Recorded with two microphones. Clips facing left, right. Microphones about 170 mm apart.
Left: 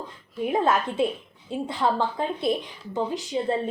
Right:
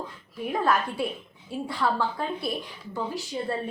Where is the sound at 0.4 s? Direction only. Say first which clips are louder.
Left 3 dB; 20° left (ahead or behind).